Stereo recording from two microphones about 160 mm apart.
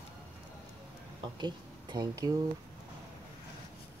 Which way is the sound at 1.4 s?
25° right (ahead or behind).